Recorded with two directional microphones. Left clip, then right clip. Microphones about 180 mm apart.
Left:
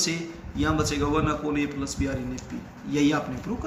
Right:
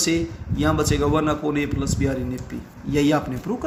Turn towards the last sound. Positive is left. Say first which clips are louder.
# right 5 dB
turn(degrees=-50)  # may be behind; listen again after turning